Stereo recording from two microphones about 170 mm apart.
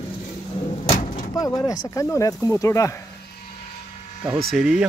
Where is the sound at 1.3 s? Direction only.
20° left (ahead or behind).